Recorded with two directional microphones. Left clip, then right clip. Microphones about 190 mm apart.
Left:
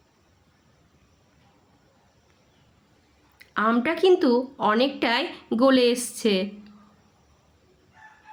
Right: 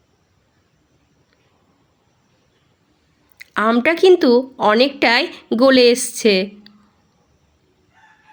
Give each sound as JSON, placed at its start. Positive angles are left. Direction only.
{"t": 3.3, "sound": "speech", "side_deg": -25}